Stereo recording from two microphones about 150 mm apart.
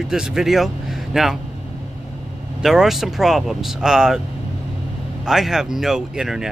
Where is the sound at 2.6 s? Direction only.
Centre (ahead or behind).